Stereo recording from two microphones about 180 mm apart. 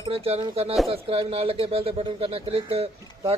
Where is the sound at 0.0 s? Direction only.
35° right (ahead or behind).